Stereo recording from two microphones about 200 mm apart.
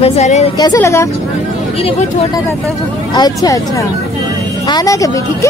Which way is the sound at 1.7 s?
30° left (ahead or behind).